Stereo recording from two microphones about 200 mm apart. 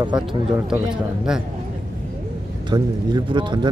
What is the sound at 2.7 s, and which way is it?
Speech, 25° right (ahead or behind).